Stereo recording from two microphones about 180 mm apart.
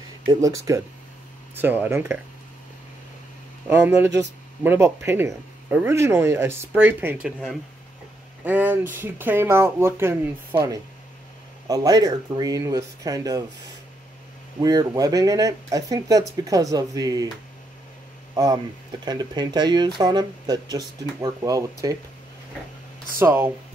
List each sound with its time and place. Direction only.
0.3 s speech: 20° right (ahead or behind)
3.6 s speech: 15° right (ahead or behind)
14.6 s speech: 20° right (ahead or behind)
18.3 s speech: 20° right (ahead or behind)
23.1 s speech: 10° right (ahead or behind)